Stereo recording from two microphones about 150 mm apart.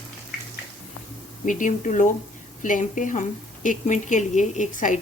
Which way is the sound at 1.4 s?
55° left (ahead or behind).